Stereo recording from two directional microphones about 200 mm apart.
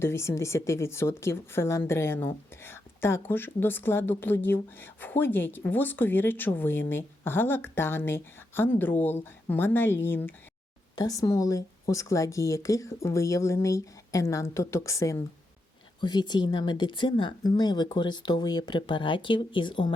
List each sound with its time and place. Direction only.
0.0 s a woman's voice: 15° left (ahead or behind)